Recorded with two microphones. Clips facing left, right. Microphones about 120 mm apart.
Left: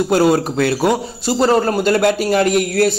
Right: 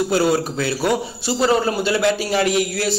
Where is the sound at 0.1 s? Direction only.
50° left (ahead or behind).